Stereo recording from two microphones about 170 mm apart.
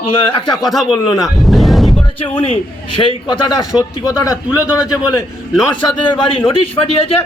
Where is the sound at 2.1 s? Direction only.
30° left (ahead or behind).